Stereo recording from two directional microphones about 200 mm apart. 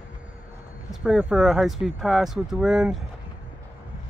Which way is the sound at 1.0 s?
Centre (ahead or behind).